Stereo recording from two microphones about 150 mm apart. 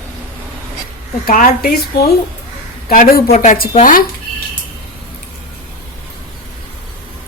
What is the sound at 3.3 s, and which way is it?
Speech, 55° left (ahead or behind).